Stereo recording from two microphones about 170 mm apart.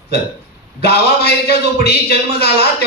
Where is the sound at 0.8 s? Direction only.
70° left (ahead or behind).